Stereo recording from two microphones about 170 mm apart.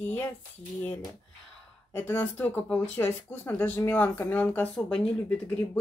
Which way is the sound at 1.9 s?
15° left (ahead or behind).